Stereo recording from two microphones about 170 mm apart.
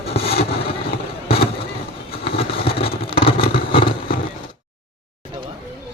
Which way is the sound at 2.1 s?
30° left (ahead or behind).